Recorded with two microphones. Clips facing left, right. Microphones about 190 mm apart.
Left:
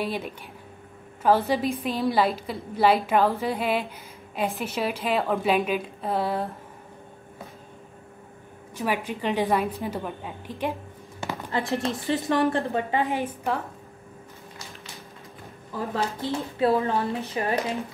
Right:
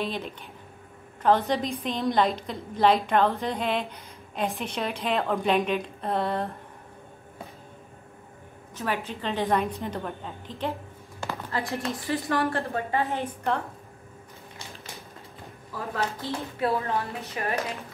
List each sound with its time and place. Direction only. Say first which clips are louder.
0.0 s a woman's voice: left 2 dB; 10° left (ahead or behind)
8.7 s a woman's voice: left 3 dB; 10° left (ahead or behind)
15.9 s a woman's voice: left 2 dB; 30° left (ahead or behind)